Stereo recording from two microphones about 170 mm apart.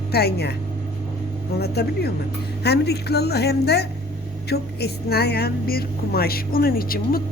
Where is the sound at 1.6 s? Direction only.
70° left (ahead or behind).